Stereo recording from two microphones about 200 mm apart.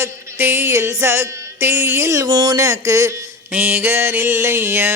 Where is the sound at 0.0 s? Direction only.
10° right (ahead or behind).